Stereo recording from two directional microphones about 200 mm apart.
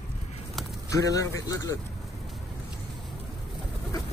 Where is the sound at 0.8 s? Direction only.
15° left (ahead or behind).